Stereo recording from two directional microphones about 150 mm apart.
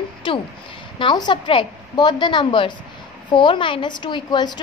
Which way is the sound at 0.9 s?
30° left (ahead or behind).